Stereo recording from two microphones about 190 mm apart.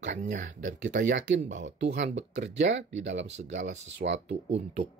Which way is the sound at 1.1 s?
70° right (ahead or behind).